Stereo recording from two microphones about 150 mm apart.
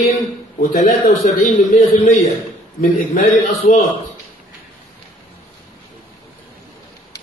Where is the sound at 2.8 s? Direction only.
65° left (ahead or behind).